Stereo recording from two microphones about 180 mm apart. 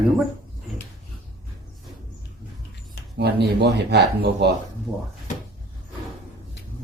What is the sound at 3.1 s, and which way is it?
Speech, 65° right (ahead or behind).